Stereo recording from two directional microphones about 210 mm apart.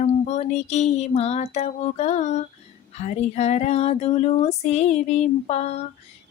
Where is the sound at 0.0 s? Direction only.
35° left (ahead or behind).